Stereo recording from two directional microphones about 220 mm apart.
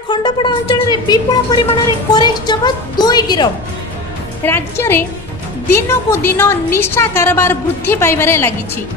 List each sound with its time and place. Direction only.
0.1 s a woman's voice: 20° left (ahead or behind)
4.5 s a woman's voice: 10° left (ahead or behind)